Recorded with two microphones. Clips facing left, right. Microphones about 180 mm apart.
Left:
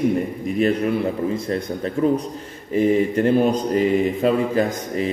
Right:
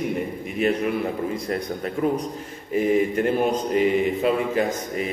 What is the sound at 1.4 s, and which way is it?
Speech, 30° left (ahead or behind).